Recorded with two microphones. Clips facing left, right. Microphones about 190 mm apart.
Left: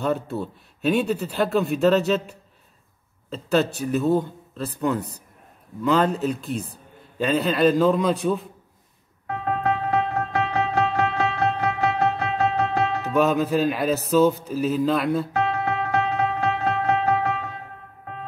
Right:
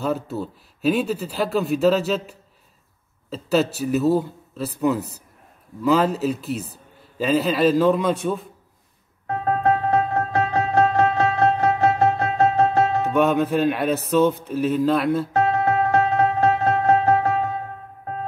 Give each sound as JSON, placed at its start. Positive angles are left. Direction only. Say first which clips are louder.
{"t": 0.0, "sound": "speech", "louder": "even", "side_deg": 0}
{"t": 9.3, "sound": "music", "louder": "right 4 dB", "side_deg": -40}
{"t": 13.1, "sound": "speech", "louder": "left 2 dB", "side_deg": 0}
{"t": 15.3, "sound": "music", "louder": "right 4 dB", "side_deg": -45}